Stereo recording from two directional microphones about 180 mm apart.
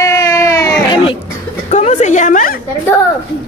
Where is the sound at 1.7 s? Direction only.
40° left (ahead or behind).